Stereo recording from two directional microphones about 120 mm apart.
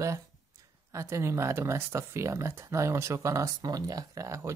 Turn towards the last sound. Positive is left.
turn(degrees=-25)  # may be behind; listen again after turning